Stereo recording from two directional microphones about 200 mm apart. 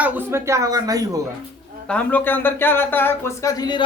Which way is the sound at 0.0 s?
10° right (ahead or behind).